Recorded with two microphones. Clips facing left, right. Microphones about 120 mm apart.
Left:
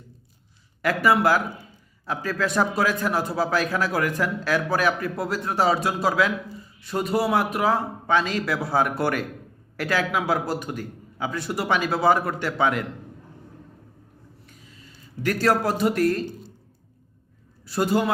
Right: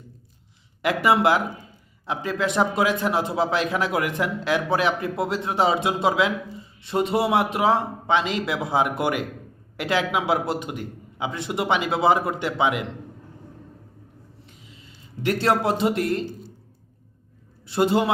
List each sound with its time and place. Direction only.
0.8 s a man's voice: 20° right (ahead or behind)
14.4 s a sound: 20° right (ahead or behind)
17.7 s a man's voice: 25° right (ahead or behind)